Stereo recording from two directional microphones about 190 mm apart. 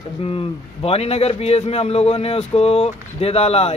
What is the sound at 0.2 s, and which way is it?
A man's voice, 30° left (ahead or behind).